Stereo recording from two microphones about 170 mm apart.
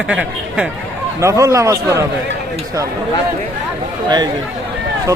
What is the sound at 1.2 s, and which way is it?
Speech, 15° right (ahead or behind).